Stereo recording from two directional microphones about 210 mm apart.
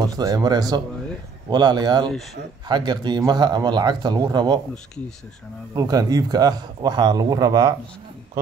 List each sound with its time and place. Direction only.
0.2 s speech: 15° right (ahead or behind)
5.8 s a man's voice: 15° right (ahead or behind)